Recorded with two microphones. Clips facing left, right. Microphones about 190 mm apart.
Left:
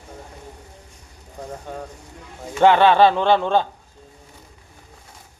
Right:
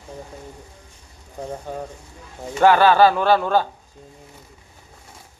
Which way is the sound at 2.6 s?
20° left (ahead or behind).